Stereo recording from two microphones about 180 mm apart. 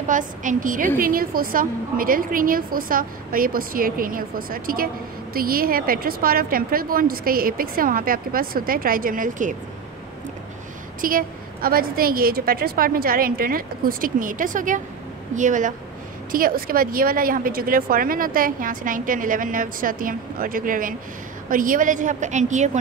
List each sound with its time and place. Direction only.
0.1 s speech: 45° right (ahead or behind)
11.0 s speech: 50° right (ahead or behind)